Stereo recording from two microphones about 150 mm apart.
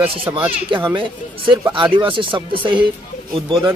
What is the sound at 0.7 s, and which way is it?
A man's voice, 30° right (ahead or behind).